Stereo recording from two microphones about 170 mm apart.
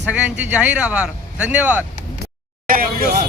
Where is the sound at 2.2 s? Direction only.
60° right (ahead or behind).